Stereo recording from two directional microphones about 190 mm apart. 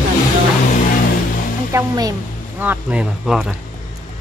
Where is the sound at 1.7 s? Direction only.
15° right (ahead or behind); by 3.5 s centre (ahead or behind).